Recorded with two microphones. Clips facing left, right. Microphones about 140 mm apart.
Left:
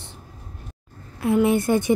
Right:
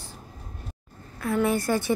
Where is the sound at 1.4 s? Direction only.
25° left (ahead or behind).